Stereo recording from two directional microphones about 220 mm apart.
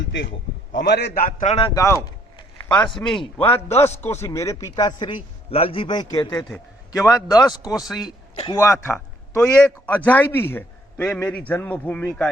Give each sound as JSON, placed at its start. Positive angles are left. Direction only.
{"t": 0.0, "sound": "a man's voice", "side_deg": 55}
{"t": 1.7, "sound": "a man's voice", "side_deg": 15}
{"t": 6.5, "sound": "a man's voice", "side_deg": 0}
{"t": 7.3, "sound": "a man's voice", "side_deg": 15}